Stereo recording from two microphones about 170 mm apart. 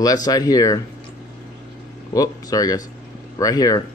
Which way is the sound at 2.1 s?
20° left (ahead or behind).